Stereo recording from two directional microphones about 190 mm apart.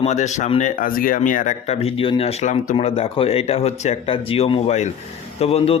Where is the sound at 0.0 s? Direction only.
40° left (ahead or behind).